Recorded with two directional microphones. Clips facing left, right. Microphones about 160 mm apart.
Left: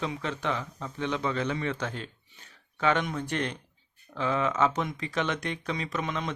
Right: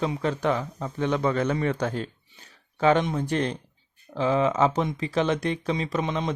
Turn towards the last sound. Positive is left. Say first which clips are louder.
# right 5 dB
turn(degrees=-30)  # may be behind; listen again after turning